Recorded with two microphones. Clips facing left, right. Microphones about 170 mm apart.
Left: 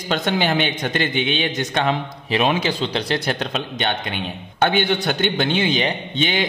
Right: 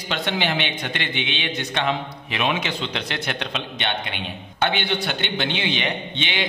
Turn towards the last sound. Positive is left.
turn(degrees=40)  # may be behind; listen again after turning